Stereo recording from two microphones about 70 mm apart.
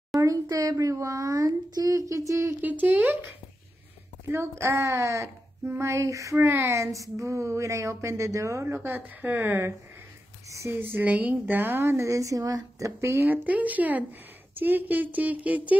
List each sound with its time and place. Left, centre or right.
0.2 s speech: right
2.6 s a woman's voice: right
4.3 s speech: right
10.7 s a woman's voice: right
12.0 s speech: right
13.2 s a woman's voice: right